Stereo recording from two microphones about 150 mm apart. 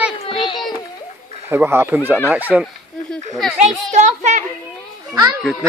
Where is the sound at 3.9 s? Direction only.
50° right (ahead or behind).